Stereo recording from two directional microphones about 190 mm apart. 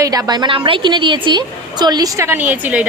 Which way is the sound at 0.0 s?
20° right (ahead or behind).